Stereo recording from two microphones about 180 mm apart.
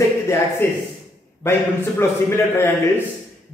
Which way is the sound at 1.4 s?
15° left (ahead or behind).